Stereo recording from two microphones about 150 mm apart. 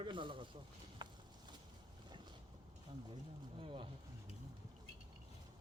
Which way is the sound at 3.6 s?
35° right (ahead or behind).